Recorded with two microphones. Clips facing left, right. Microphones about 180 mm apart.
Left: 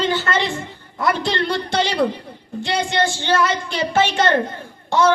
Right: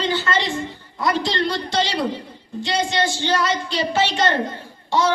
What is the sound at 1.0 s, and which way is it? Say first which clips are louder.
A woman's voice: left 1 dB; 60° left (ahead or behind).